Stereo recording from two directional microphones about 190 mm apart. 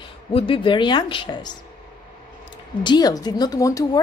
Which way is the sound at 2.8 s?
20° left (ahead or behind).